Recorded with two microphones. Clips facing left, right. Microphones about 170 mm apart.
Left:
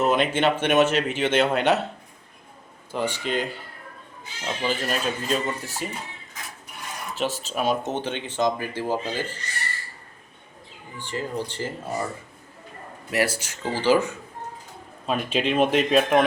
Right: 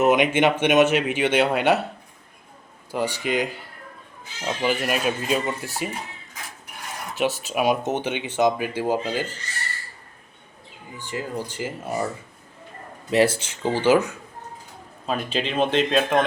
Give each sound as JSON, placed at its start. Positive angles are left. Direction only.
{"t": 0.0, "sound": "speech", "side_deg": -15}
{"t": 2.9, "sound": "speech", "side_deg": -10}
{"t": 4.6, "sound": "speech", "side_deg": -10}
{"t": 7.2, "sound": "speech", "side_deg": -15}
{"t": 11.1, "sound": "speech", "side_deg": -10}
{"t": 13.1, "sound": "speech", "side_deg": -25}
{"t": 15.0, "sound": "speech", "side_deg": 0}